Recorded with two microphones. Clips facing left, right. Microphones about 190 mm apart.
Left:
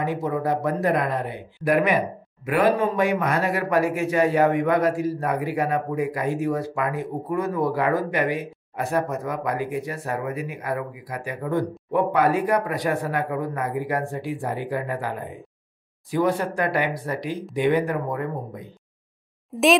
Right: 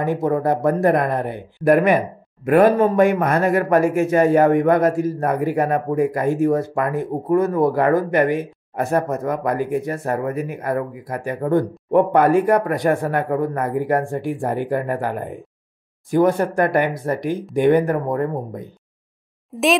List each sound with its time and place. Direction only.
0.0 s speech: 45° right (ahead or behind)
19.5 s speech: centre (ahead or behind)